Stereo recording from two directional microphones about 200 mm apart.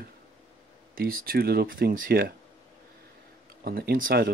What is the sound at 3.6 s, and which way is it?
Speech, 50° right (ahead or behind).